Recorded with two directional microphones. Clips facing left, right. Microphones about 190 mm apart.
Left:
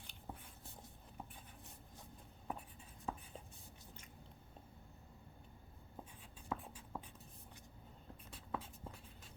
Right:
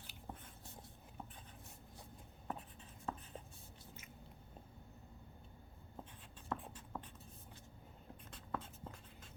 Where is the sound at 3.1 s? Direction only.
5° left (ahead or behind).